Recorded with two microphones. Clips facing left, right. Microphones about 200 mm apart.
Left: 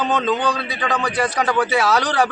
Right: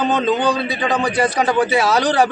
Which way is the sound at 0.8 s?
30° right (ahead or behind).